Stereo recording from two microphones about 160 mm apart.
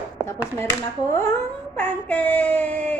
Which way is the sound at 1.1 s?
15° left (ahead or behind).